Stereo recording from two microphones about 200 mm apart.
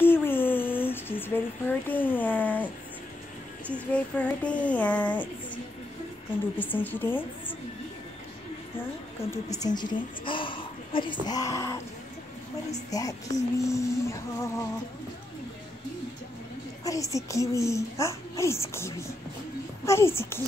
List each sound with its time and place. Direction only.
0.0 s a sound: 10° left (ahead or behind)
1.2 s a child's voice: 10° left (ahead or behind)
6.6 s a child's voice: 10° left (ahead or behind)
9.3 s a woman's voice: 15° left (ahead or behind)
12.9 s a child's voice: 15° left (ahead or behind)
16.8 s a child's voice: 15° left (ahead or behind)